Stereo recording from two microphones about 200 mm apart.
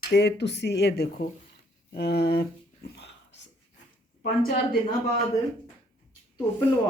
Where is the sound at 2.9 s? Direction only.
60° left (ahead or behind).